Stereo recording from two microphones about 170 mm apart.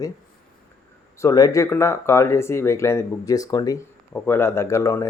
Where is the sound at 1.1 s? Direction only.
20° left (ahead or behind).